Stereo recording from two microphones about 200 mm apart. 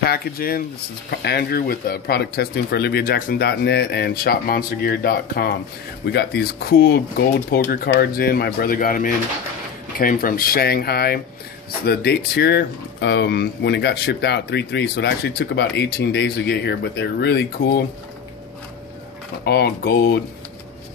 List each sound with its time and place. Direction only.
0.0 s speech: 50° left (ahead or behind)
19.4 s speech: 50° left (ahead or behind)